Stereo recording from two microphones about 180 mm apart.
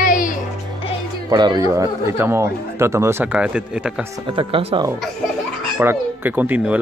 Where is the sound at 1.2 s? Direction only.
25° right (ahead or behind); by 4.0 s 5° right (ahead or behind).